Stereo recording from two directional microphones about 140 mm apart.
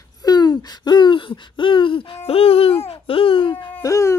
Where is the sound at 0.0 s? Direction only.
30° left (ahead or behind).